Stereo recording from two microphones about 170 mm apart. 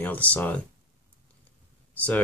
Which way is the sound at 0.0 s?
10° left (ahead or behind).